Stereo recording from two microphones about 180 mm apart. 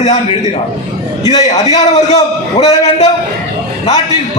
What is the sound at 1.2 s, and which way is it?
A man's voice, 40° left (ahead or behind).